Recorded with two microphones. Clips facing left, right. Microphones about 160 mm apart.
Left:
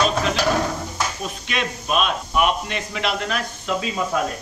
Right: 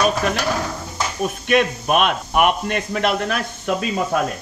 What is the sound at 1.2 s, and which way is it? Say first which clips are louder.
A man's voice: right 9 dB; 55° right (ahead or behind).